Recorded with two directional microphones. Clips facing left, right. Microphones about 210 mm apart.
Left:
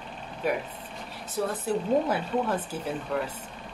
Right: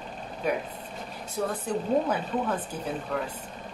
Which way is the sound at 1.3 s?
5° left (ahead or behind).